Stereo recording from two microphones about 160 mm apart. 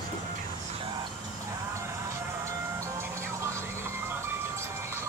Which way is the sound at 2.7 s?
15° right (ahead or behind).